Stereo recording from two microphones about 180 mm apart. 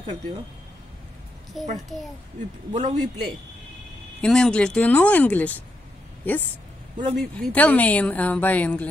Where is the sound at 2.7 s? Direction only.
40° right (ahead or behind).